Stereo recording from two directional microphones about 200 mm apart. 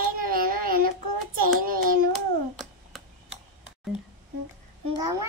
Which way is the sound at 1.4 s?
45° right (ahead or behind).